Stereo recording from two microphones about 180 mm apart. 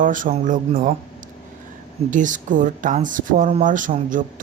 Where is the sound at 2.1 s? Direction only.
45° right (ahead or behind).